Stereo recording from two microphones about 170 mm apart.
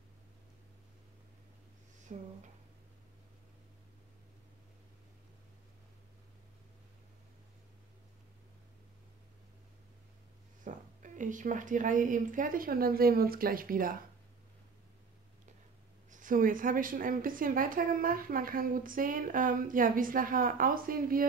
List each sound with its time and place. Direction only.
2.1 s a woman's voice: 45° right (ahead or behind)
10.6 s a woman's voice: 50° right (ahead or behind)
16.1 s a woman's voice: 50° right (ahead or behind)